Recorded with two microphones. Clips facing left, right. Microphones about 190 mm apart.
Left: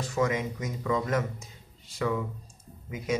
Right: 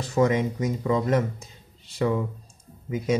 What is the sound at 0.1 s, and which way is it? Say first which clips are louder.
A man's voice: right 7 dB; 30° right (ahead or behind).